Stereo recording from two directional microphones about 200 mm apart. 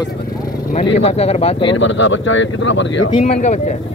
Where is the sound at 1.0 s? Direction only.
30° left (ahead or behind).